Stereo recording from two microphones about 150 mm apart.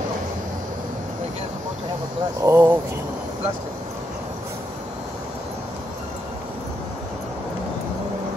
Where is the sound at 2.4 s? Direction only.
20° right (ahead or behind).